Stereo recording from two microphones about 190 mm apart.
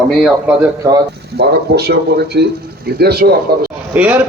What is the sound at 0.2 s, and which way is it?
Speech, 5° right (ahead or behind).